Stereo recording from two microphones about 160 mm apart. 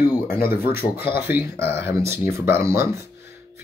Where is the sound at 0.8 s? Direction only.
75° left (ahead or behind).